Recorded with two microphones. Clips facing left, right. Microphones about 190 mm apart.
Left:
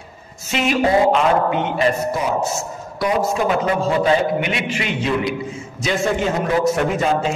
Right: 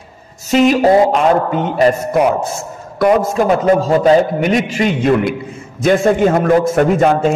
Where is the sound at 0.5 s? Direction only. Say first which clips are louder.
Right 7 dB; 40° right (ahead or behind).